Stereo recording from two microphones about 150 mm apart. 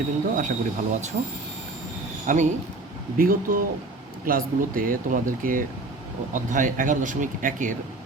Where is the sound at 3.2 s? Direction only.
70° right (ahead or behind).